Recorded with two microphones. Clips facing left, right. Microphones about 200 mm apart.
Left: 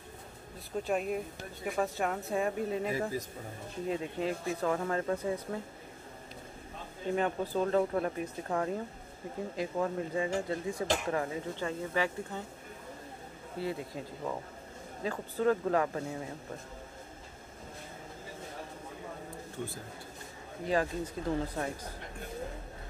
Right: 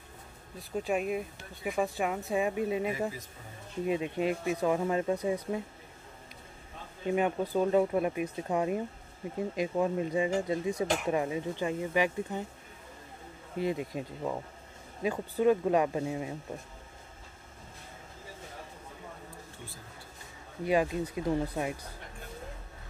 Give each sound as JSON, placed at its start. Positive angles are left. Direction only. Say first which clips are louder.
{"t": 0.8, "sound": "speech", "louder": "right 1 dB", "side_deg": -5}
{"t": 7.2, "sound": "speech", "louder": "right 3 dB", "side_deg": -15}
{"t": 13.6, "sound": "speech", "louder": "right 4 dB", "side_deg": -20}
{"t": 20.6, "sound": "speech", "louder": "right 3 dB", "side_deg": -15}